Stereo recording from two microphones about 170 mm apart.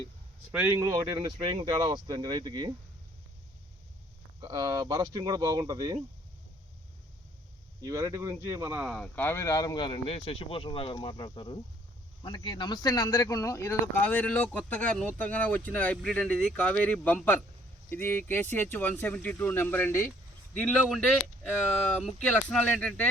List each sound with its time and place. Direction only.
0.5 s speech: 10° right (ahead or behind)
4.4 s speech: 25° right (ahead or behind)
7.8 s speech: 20° right (ahead or behind); by 9.0 s 5° right (ahead or behind)
9.1 s speech: 15° left (ahead or behind)